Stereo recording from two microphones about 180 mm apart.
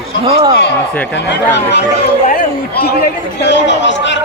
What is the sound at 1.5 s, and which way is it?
Speech, 70° left (ahead or behind).